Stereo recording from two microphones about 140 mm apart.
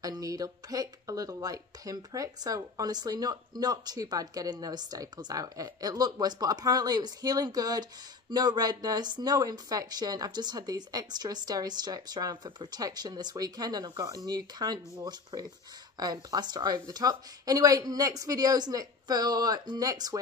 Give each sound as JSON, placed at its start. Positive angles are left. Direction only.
{"t": 0.0, "sound": "speech", "side_deg": -25}